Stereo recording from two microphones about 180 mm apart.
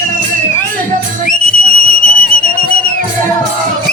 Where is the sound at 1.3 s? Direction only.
50° left (ahead or behind).